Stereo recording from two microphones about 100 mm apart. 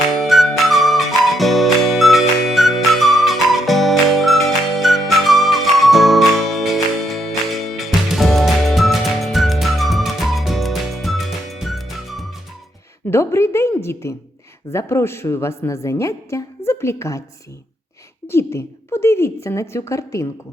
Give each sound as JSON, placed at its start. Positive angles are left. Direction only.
{"t": 0.2, "sound": "music", "side_deg": 0}
{"t": 13.1, "sound": "a woman's voice", "side_deg": 25}
{"t": 18.3, "sound": "a woman's voice", "side_deg": 25}